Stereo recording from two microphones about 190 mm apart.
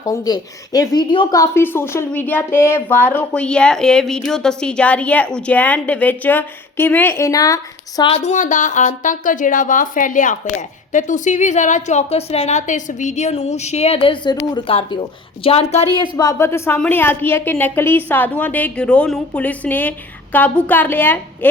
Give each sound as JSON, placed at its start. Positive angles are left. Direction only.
{"t": 0.0, "sound": "speech", "side_deg": 20}
{"t": 8.1, "sound": "a woman's voice", "side_deg": 35}
{"t": 15.9, "sound": "speech", "side_deg": 15}